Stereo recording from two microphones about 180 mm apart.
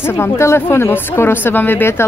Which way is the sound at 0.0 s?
15° left (ahead or behind).